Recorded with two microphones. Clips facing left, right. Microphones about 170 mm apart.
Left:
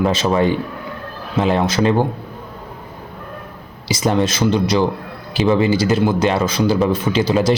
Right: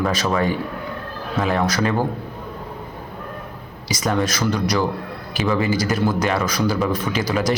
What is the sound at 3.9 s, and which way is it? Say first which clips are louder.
A man's voice: left 4 dB; 30° left (ahead or behind).